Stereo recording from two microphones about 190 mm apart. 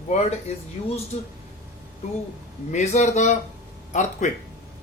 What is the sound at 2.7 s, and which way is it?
Speech, 35° left (ahead or behind).